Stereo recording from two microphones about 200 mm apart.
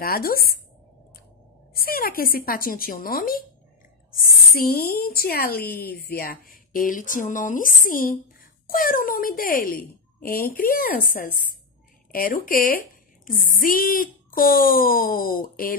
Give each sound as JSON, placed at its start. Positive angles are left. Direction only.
{"t": 0.0, "sound": "a woman's voice", "side_deg": 45}
{"t": 1.7, "sound": "a woman's voice", "side_deg": 45}